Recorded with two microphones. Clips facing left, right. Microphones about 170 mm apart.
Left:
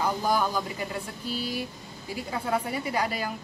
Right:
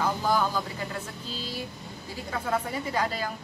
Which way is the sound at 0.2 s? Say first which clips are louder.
Even; 15° left (ahead or behind).